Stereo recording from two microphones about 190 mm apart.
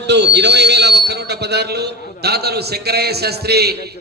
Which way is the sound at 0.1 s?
65° right (ahead or behind).